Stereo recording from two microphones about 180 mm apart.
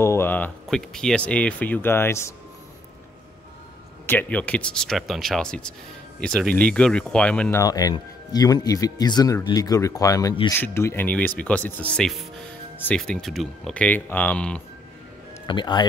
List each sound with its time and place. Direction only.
0.0 s speech: 15° left (ahead or behind)
4.0 s speech: 10° left (ahead or behind)
7.6 s speech: 20° left (ahead or behind)
15.4 s speech: 25° left (ahead or behind)